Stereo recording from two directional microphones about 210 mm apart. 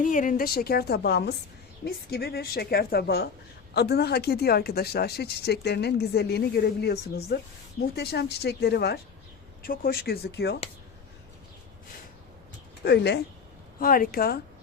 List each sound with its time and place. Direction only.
0.0 s speech: 40° left (ahead or behind)
12.8 s speech: 55° left (ahead or behind)
13.7 s speech: 40° left (ahead or behind)